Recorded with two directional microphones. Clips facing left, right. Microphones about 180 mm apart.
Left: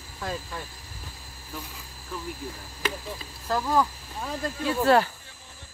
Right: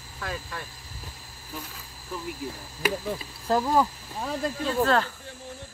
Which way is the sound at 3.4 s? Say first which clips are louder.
Right 2 dB; 20° right (ahead or behind).